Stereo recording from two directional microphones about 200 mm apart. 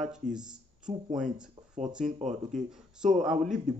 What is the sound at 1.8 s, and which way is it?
Speech, 35° right (ahead or behind).